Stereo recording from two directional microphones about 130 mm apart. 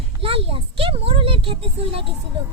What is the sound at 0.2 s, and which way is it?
Speech, 45° right (ahead or behind).